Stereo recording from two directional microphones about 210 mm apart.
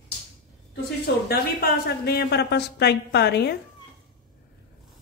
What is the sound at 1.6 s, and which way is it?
A woman's voice, 50° left (ahead or behind).